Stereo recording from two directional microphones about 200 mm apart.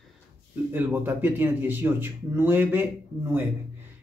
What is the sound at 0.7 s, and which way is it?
Speech, 10° right (ahead or behind).